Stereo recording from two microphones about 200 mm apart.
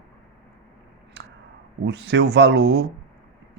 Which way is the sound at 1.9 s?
60° right (ahead or behind).